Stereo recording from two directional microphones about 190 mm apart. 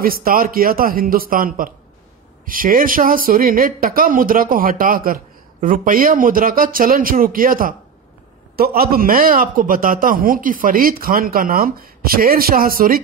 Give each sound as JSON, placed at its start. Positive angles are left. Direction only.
{"t": 0.0, "sound": "speech", "side_deg": -50}